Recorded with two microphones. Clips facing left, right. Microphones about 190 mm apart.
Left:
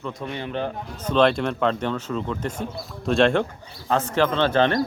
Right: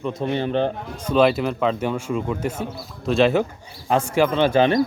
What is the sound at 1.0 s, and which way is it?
Speech, 5° right (ahead or behind).